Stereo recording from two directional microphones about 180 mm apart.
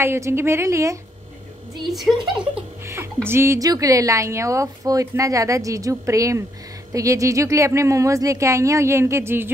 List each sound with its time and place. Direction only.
0.0 s a woman's voice: 15° right (ahead or behind)
1.9 s a woman's voice: centre (ahead or behind)
2.5 s a woman's voice: 15° right (ahead or behind)